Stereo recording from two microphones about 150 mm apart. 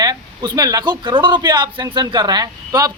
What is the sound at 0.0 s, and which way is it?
Speech, 25° right (ahead or behind).